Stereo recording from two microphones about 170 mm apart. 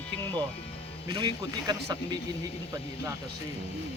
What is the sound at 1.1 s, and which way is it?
Speech, 25° right (ahead or behind).